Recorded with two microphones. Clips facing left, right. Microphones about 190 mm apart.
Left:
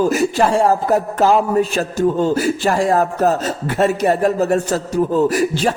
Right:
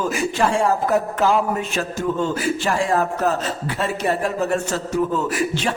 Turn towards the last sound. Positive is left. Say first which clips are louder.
# left 7 dB
turn(degrees=40)  # may be behind; listen again after turning